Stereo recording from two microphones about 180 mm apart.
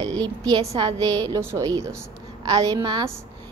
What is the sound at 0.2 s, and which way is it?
A woman's voice, 20° right (ahead or behind).